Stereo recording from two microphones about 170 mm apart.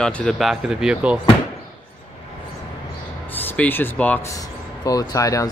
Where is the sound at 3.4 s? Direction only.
10° left (ahead or behind).